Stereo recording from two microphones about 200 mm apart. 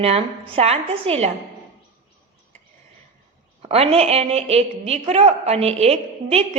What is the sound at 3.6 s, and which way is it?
A woman's voice, 30° right (ahead or behind).